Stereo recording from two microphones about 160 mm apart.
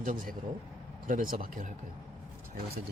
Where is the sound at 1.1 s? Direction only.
60° right (ahead or behind).